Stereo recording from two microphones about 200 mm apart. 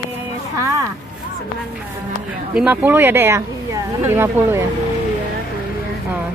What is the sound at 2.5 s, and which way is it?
Speech, 5° right (ahead or behind).